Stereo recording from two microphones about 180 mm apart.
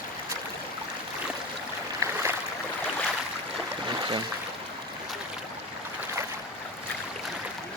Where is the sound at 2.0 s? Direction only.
15° right (ahead or behind).